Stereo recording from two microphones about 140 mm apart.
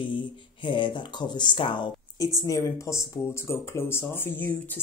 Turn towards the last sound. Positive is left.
turn(degrees=15)  # may be behind; listen again after turning